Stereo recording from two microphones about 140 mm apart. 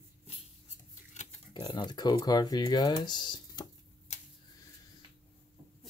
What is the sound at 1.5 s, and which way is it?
Speech, 35° left (ahead or behind).